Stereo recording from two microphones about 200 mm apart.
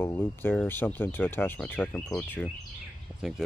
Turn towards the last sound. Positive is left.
turn(degrees=0)  # may be behind; listen again after turning